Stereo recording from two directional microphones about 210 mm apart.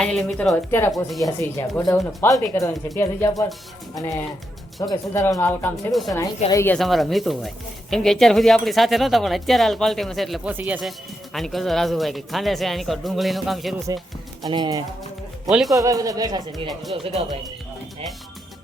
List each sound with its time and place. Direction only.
0.0 s speech: 5° left (ahead or behind)
5.7 s speech: centre (ahead or behind)
6.5 s speech: 15° left (ahead or behind)
6.7 s speech: centre (ahead or behind)
14.4 s speech: 20° right (ahead or behind)
15.4 s speech: centre (ahead or behind)
15.7 s a man's voice: 15° right (ahead or behind)
16.9 s speech: 25° right (ahead or behind)